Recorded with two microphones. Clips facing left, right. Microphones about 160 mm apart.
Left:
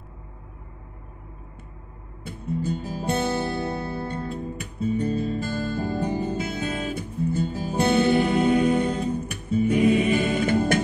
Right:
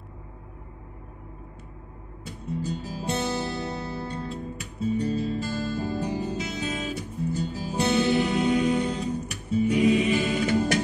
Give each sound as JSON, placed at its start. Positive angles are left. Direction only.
{"t": 2.2, "sound": "music", "side_deg": 55}